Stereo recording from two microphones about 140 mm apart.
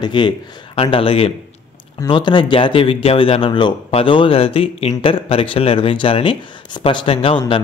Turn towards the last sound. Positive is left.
turn(degrees=40)  # may be behind; listen again after turning